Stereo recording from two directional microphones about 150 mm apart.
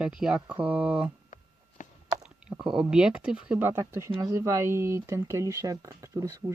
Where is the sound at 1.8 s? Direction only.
55° left (ahead or behind).